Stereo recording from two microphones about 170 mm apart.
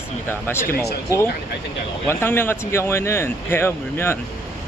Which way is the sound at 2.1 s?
15° left (ahead or behind).